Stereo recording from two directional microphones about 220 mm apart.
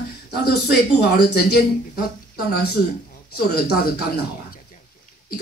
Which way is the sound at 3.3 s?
45° left (ahead or behind).